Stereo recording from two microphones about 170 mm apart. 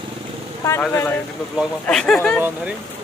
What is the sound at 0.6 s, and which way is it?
Speech, 15° left (ahead or behind).